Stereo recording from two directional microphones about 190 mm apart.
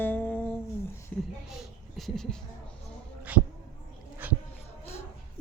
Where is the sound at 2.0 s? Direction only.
Centre (ahead or behind).